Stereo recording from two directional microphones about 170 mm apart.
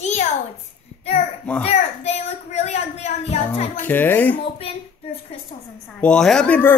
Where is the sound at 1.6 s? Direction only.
40° left (ahead or behind).